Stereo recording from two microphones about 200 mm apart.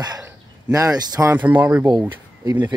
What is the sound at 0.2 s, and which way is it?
Speech, 15° right (ahead or behind).